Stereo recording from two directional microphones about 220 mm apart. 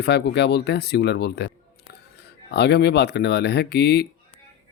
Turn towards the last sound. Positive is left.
turn(degrees=50)  # may be behind; listen again after turning